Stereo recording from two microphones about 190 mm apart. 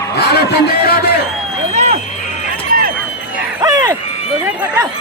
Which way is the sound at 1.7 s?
35° right (ahead or behind).